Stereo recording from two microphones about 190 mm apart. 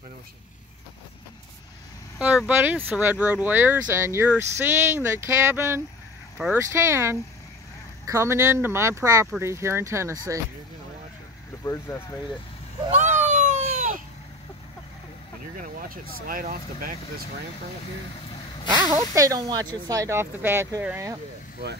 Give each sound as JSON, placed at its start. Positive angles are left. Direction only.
{"t": 2.1, "sound": "speech", "side_deg": -5}
{"t": 11.6, "sound": "speech", "side_deg": 15}
{"t": 13.0, "sound": "a sound", "side_deg": -10}
{"t": 13.5, "sound": "baby cry", "side_deg": -45}
{"t": 15.5, "sound": "speech", "side_deg": -45}
{"t": 18.7, "sound": "speech", "side_deg": -20}